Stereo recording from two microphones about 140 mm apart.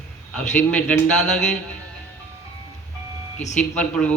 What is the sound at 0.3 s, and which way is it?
A man's voice, 10° left (ahead or behind).